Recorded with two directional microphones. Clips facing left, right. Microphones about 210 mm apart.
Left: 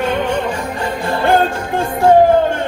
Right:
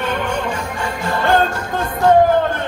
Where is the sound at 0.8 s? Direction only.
30° left (ahead or behind).